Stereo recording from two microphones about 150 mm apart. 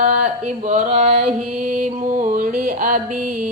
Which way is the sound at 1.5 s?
60° right (ahead or behind).